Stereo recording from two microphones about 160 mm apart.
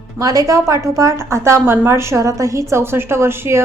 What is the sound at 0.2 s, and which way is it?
A woman's voice, 20° right (ahead or behind).